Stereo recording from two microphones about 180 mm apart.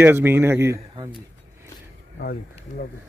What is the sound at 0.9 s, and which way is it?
Speech, 25° right (ahead or behind).